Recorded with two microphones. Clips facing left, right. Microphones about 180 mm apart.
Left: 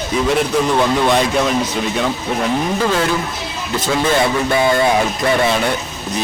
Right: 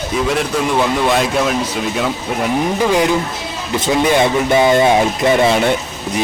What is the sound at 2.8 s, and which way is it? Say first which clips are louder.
Speech: right 3 dB; 15° right (ahead or behind).